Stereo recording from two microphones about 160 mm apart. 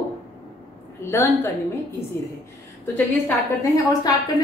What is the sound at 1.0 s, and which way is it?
Speech, 15° left (ahead or behind).